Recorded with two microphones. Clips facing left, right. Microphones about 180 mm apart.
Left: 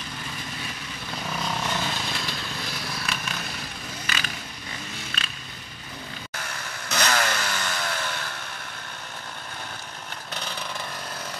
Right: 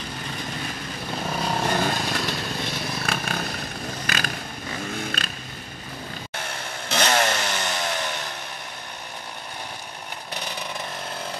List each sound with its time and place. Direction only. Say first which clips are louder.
1.1 s vehicle: right 4 dB; 35° right (ahead or behind)
1.6 s vehicle: right 6 dB; 50° right (ahead or behind)
6.9 s chainsaw: right 3 dB; 25° right (ahead or behind)